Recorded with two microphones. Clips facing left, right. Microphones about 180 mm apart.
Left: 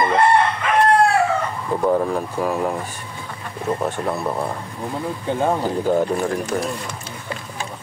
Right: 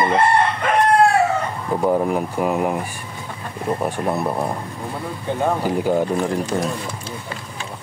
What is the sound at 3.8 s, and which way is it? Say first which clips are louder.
Speech: right 1 dB; 15° right (ahead or behind).